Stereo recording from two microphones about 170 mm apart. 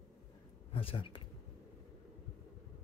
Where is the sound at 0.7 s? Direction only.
35° left (ahead or behind).